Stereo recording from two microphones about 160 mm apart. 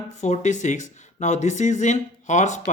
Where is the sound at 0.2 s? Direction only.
50° left (ahead or behind).